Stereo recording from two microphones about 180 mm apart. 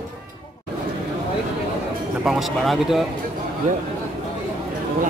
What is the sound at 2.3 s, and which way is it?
Speech, centre (ahead or behind).